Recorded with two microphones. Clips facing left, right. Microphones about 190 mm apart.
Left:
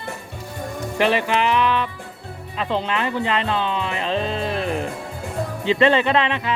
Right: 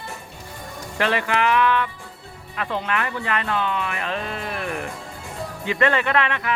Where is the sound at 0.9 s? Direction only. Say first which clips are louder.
Left 3 dB; 20° left (ahead or behind).